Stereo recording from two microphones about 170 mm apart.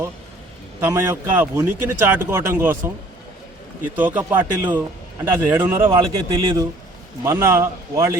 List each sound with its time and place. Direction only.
0.8 s speech: 15° right (ahead or behind)
3.9 s speech: 10° right (ahead or behind)
5.9 s speech: 25° right (ahead or behind)